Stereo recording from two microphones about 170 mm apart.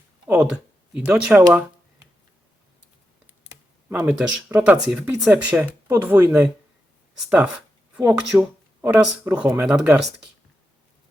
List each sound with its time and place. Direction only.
0.3 s speech: 5° right (ahead or behind)
3.8 s speech: 10° right (ahead or behind)